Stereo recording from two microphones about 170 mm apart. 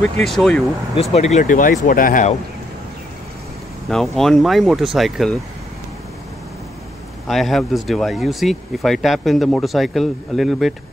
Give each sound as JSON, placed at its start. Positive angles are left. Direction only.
{"t": 0.0, "sound": "speech", "side_deg": 0}
{"t": 1.1, "sound": "speech", "side_deg": 40}
{"t": 1.4, "sound": "speech", "side_deg": 55}
{"t": 3.9, "sound": "speech", "side_deg": 5}
{"t": 7.2, "sound": "speech", "side_deg": 0}